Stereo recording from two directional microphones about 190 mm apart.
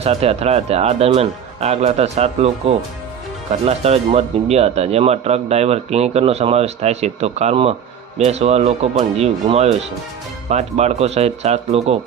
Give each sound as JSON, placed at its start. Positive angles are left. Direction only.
{"t": 0.0, "sound": "speech", "side_deg": -30}